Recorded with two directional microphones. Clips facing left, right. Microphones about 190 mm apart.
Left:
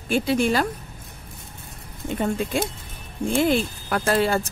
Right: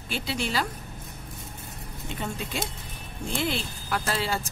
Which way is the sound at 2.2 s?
50° left (ahead or behind).